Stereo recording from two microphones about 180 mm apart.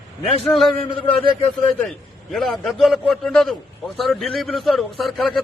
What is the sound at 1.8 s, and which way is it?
A man's voice, centre (ahead or behind).